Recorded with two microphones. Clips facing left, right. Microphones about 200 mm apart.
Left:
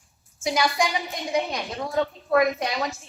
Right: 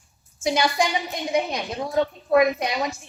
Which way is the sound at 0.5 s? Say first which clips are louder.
Right 1 dB; 25° right (ahead or behind).